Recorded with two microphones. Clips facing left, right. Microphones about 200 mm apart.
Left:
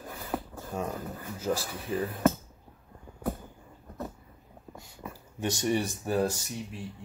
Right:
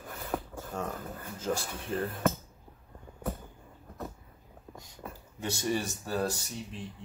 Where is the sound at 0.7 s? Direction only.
10° left (ahead or behind).